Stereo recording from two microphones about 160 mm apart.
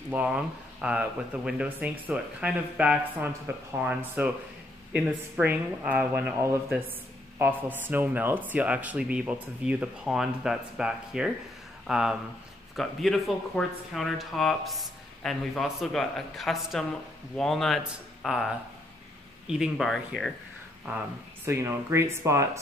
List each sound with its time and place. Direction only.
0.1 s speech: 10° right (ahead or behind)
21.5 s speech: 15° right (ahead or behind)